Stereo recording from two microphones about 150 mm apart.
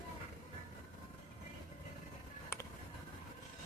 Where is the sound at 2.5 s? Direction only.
15° left (ahead or behind).